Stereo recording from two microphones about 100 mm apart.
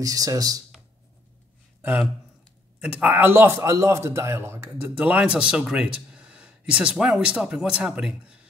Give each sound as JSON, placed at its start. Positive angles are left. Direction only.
{"t": 0.0, "sound": "speech", "side_deg": -35}
{"t": 1.8, "sound": "a man's voice", "side_deg": -15}